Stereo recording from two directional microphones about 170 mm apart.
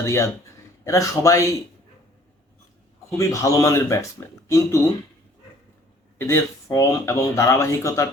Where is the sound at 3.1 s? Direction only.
20° left (ahead or behind).